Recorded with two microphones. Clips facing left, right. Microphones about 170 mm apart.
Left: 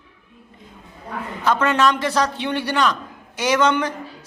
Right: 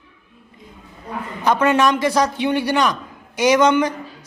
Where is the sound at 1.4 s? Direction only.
15° right (ahead or behind).